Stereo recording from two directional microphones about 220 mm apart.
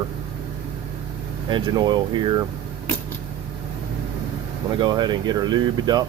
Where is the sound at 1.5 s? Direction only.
20° right (ahead or behind).